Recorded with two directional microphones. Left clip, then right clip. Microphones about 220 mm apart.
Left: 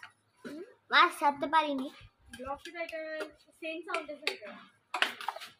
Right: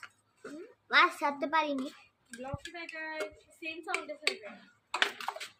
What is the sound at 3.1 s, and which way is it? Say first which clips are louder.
A child's voice: right 1 dB; 40° right (ahead or behind).